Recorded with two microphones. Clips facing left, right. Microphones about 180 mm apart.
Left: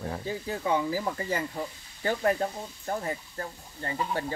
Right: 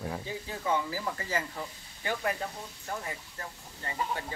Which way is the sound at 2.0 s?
40° left (ahead or behind).